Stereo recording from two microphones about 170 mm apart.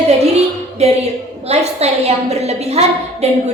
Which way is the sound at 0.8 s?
40° right (ahead or behind).